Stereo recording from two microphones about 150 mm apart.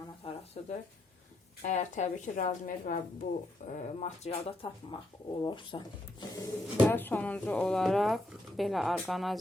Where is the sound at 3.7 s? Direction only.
50° left (ahead or behind).